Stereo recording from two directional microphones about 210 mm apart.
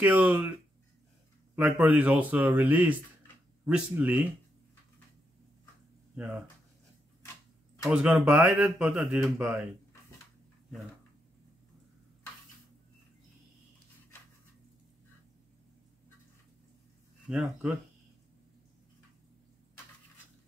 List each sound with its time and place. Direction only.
0.0 s speech: 5° right (ahead or behind)
1.5 s speech: 5° right (ahead or behind)
6.1 s speech: 5° right (ahead or behind)
7.9 s speech: 5° right (ahead or behind)
17.3 s speech: centre (ahead or behind)